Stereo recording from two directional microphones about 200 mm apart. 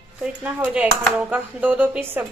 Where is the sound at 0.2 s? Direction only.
5° right (ahead or behind).